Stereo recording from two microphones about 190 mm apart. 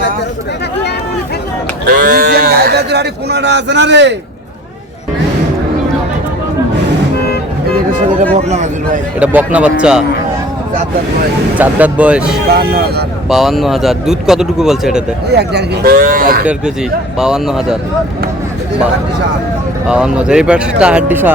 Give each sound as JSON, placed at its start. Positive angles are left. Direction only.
{"t": 1.9, "sound": "speech", "side_deg": -55}
{"t": 8.3, "sound": "speech", "side_deg": -35}
{"t": 9.2, "sound": "speech", "side_deg": -5}
{"t": 11.5, "sound": "speech", "side_deg": -10}
{"t": 12.5, "sound": "speech", "side_deg": -55}
{"t": 13.2, "sound": "speech", "side_deg": 0}
{"t": 15.3, "sound": "speech", "side_deg": -60}
{"t": 17.2, "sound": "speech", "side_deg": -5}
{"t": 19.9, "sound": "speech", "side_deg": -5}